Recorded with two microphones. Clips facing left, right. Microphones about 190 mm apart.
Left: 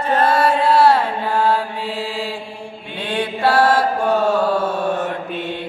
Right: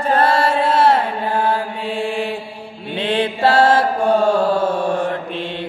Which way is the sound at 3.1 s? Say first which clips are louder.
Right 2 dB; 25° right (ahead or behind).